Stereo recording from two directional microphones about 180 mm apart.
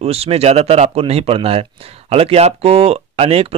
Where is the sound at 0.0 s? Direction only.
35° right (ahead or behind).